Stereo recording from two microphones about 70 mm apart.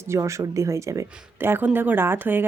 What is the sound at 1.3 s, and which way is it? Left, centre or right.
Speech, right.